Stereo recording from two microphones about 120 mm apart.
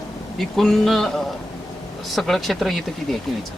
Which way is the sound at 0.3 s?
Centre (ahead or behind).